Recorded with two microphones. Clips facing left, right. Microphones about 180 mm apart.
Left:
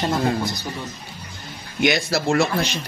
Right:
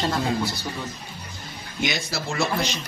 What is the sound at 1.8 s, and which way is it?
Speech, 60° left (ahead or behind).